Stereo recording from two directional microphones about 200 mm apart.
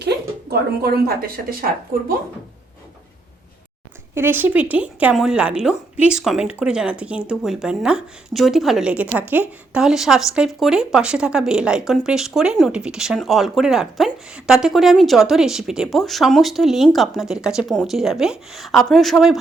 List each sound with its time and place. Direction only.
0.5 s a woman's voice: 50° right (ahead or behind)
4.1 s speech: 10° right (ahead or behind)